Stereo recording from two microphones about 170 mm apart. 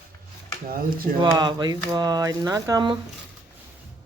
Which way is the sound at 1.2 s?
25° right (ahead or behind).